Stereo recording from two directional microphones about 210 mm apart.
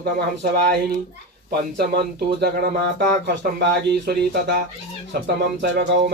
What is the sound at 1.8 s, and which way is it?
Speech, 50° right (ahead or behind).